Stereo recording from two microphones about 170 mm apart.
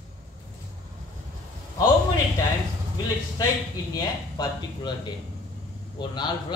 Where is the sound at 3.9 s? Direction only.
25° left (ahead or behind).